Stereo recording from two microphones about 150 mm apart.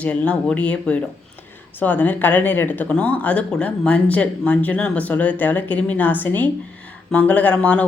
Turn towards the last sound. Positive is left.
turn(degrees=10)  # may be behind; listen again after turning